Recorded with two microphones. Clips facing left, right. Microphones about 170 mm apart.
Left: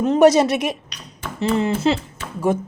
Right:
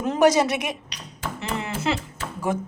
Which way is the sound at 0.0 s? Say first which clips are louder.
Left 5 dB; 25° left (ahead or behind).